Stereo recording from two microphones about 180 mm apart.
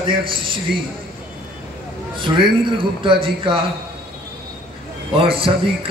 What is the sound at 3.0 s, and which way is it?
Speech, 30° right (ahead or behind).